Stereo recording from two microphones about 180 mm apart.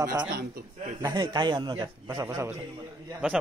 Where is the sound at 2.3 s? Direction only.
10° right (ahead or behind).